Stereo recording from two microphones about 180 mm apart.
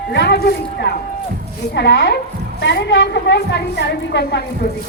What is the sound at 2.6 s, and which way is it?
A woman's voice, 75° left (ahead or behind).